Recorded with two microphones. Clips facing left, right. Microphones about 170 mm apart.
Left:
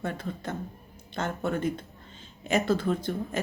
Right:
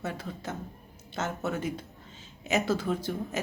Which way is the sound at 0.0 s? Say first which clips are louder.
Left 2 dB; 5° right (ahead or behind).